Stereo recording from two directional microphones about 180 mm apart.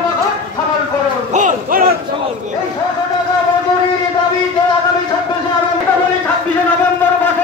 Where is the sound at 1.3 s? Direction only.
45° right (ahead or behind).